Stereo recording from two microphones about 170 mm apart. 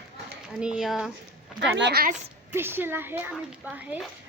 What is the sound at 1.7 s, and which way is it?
Speech, 80° right.